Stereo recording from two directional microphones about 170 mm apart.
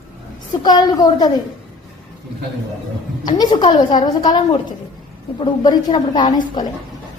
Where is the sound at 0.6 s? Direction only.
25° left (ahead or behind).